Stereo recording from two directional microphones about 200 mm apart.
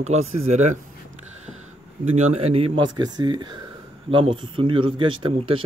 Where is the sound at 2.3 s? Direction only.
30° right (ahead or behind).